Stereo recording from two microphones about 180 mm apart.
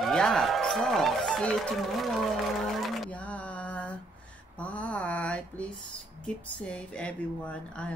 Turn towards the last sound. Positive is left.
turn(degrees=5)  # may be behind; listen again after turning